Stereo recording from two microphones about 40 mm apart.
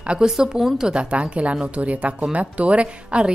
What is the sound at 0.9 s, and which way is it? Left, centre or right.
A woman's voice, right.